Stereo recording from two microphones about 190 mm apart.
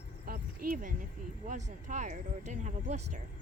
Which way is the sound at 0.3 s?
50° right (ahead or behind).